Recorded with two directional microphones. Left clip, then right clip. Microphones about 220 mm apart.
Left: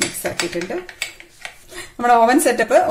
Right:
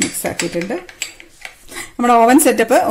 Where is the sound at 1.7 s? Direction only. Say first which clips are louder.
Right 1 dB; 40° right (ahead or behind).